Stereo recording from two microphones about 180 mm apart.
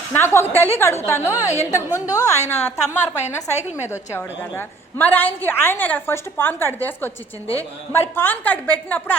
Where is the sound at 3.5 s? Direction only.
10° right (ahead or behind).